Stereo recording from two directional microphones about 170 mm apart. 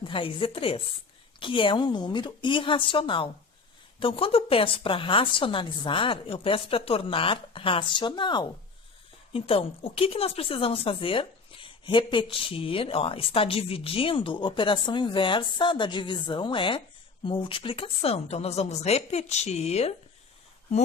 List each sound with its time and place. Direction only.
0.0 s a woman's voice: 30° left (ahead or behind)